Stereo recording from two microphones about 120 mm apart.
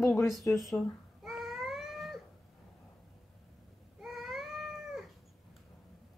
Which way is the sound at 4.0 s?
Centre (ahead or behind).